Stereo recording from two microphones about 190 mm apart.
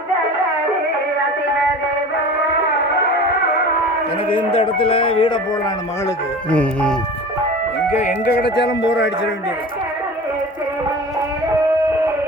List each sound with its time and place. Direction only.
4.3 s speech: 25° left (ahead or behind)
6.5 s speech: 5° left (ahead or behind)
8.2 s speech: 60° left (ahead or behind)